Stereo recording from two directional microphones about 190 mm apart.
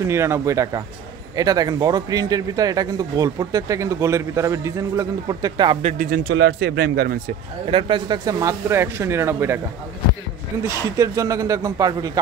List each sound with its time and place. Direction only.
0.0 s speech: 15° right (ahead or behind)
5.8 s speech: 35° right (ahead or behind)
6.0 s speech: 55° right (ahead or behind)
7.6 s speech: 25° right (ahead or behind)
10.6 s speech: 15° right (ahead or behind)